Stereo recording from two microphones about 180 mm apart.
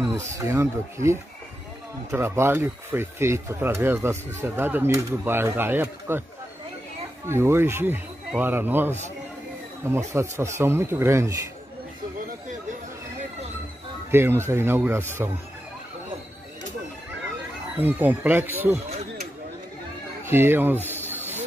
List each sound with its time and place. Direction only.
0.0 s speech: 15° right (ahead or behind)
7.2 s speech: 15° right (ahead or behind)
14.1 s speech: 15° right (ahead or behind)
17.7 s speech: 10° right (ahead or behind)
20.2 s speech: 10° right (ahead or behind)